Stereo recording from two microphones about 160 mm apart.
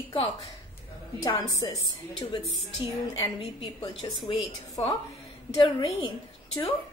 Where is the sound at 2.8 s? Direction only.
30° left (ahead or behind).